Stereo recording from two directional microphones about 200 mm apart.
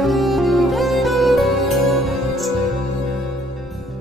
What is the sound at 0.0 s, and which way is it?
Music, centre (ahead or behind).